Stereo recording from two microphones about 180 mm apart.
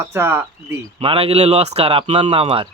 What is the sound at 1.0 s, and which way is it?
Speech, 30° right (ahead or behind).